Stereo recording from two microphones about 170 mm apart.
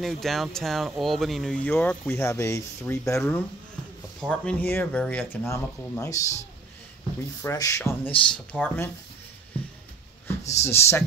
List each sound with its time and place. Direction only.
0.0 s speech: centre (ahead or behind); by 6.2 s 20° left (ahead or behind)
7.4 s speech: 20° left (ahead or behind)
10.5 s speech: 15° left (ahead or behind)